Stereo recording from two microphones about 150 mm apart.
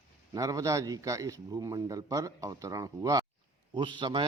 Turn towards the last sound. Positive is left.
turn(degrees=-30)  # may be behind; listen again after turning